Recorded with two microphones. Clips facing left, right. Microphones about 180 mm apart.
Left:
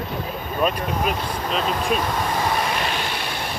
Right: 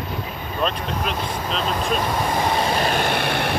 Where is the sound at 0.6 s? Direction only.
5° left (ahead or behind).